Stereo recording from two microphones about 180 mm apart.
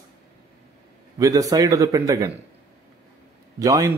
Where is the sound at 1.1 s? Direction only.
20° right (ahead or behind).